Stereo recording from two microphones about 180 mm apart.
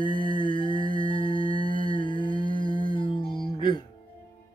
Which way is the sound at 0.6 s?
30° left (ahead or behind).